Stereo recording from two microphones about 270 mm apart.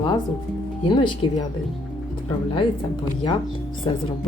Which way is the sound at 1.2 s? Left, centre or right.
Centre.